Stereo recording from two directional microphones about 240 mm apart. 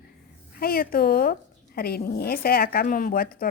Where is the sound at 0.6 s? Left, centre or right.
Left.